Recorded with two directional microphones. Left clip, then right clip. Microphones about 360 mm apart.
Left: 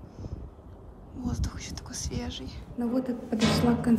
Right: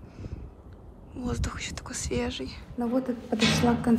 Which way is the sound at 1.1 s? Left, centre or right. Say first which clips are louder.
Right 3 dB; centre.